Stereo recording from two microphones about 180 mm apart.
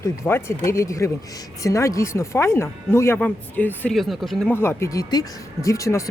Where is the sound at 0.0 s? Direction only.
15° left (ahead or behind).